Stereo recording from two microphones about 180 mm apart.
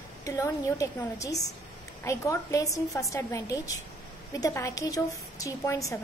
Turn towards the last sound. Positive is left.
turn(degrees=15)  # may be behind; listen again after turning